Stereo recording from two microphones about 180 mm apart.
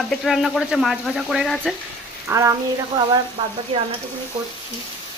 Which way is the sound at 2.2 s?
15° right (ahead or behind).